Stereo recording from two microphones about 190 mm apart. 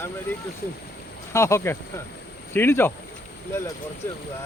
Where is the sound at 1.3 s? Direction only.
15° left (ahead or behind).